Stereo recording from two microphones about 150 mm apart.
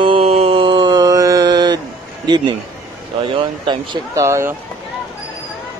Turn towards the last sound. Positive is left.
turn(degrees=-20)  # may be behind; listen again after turning